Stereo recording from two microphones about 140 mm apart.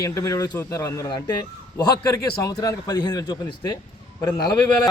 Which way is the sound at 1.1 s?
30° left (ahead or behind).